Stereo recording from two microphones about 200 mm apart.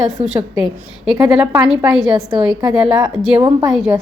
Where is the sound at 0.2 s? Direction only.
30° right (ahead or behind).